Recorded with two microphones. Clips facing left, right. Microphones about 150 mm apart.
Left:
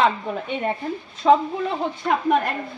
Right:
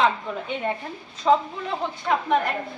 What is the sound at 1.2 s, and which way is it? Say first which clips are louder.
Speech: left 3 dB; 50° left (ahead or behind).